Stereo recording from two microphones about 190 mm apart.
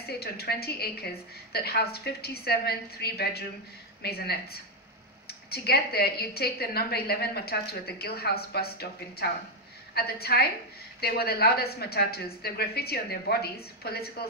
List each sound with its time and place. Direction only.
0.0 s a woman's voice: 55° left (ahead or behind)